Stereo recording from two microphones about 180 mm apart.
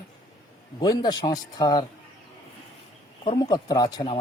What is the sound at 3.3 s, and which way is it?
Speech, 20° left (ahead or behind).